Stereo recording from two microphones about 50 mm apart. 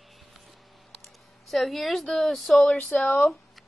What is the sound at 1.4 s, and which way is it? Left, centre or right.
Speech, centre.